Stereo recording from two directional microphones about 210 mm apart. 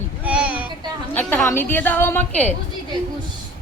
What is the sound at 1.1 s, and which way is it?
A woman's voice, 10° left (ahead or behind).